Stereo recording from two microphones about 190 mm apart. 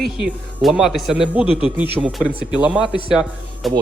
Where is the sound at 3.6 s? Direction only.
Centre (ahead or behind).